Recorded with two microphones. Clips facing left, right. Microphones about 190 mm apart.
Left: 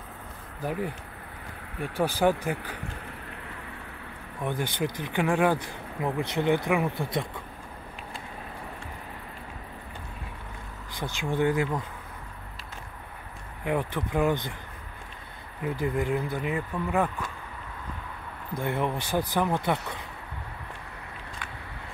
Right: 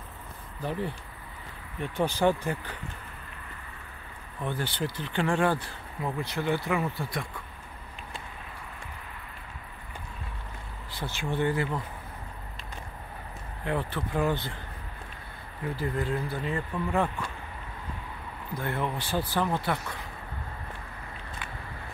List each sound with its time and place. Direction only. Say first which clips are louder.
0.7 s speech: left 1 dB; 10° left (ahead or behind)
4.4 s speech: left 2 dB; 15° left (ahead or behind)
11.0 s speech: left 3 dB; 15° left (ahead or behind)
13.7 s speech: left 2 dB; 15° left (ahead or behind)
15.6 s speech: left 3 dB; 15° left (ahead or behind)
18.6 s speech: left 3 dB; 20° left (ahead or behind)